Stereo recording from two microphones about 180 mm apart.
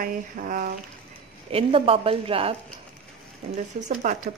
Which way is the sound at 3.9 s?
45° right (ahead or behind).